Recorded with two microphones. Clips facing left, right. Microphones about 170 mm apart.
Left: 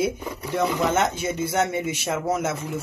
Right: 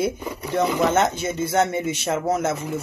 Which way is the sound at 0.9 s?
10° left (ahead or behind).